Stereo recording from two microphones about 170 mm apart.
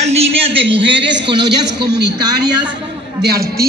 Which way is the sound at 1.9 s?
80° right.